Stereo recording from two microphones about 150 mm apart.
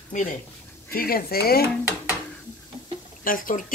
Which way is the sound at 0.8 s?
80° left.